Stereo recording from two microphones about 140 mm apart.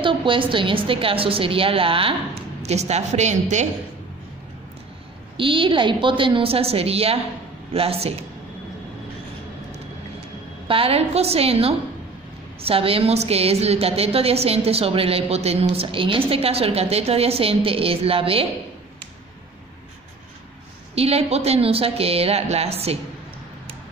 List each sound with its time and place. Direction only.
0.0 s a woman's voice: 35° right (ahead or behind)
2.6 s a woman's voice: 50° right (ahead or behind)
5.4 s a woman's voice: 40° right (ahead or behind)
10.7 s a woman's voice: 45° right (ahead or behind)
20.9 s a woman's voice: 45° right (ahead or behind)